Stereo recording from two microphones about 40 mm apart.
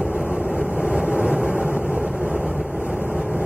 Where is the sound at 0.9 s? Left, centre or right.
Right.